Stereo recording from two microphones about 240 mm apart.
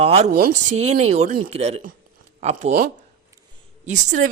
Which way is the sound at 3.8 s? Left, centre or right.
Right.